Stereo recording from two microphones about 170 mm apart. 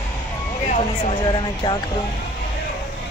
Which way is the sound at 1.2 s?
25° left (ahead or behind).